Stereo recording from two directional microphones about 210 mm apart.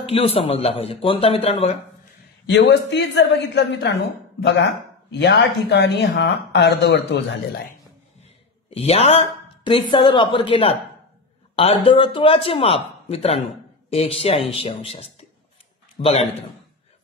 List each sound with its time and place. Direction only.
0.0 s speech: 25° left (ahead or behind)
2.4 s a woman's voice: 55° left (ahead or behind)
8.2 s a sound: 30° left (ahead or behind)
9.7 s speech: 25° left (ahead or behind)